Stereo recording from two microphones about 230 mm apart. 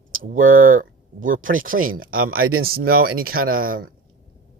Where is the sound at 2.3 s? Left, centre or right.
Right.